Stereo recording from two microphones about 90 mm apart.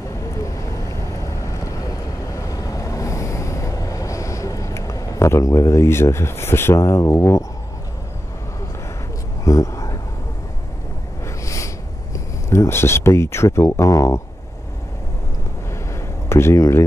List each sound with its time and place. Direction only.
0.4 s vehicle: 35° left (ahead or behind)
9.4 s a sound: 35° left (ahead or behind)
11.4 s snort: 35° left (ahead or behind)
12.4 s speech: 30° left (ahead or behind)
16.3 s speech: 30° left (ahead or behind)